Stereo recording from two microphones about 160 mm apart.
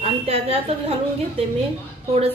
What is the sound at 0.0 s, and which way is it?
Speech, 40° right (ahead or behind).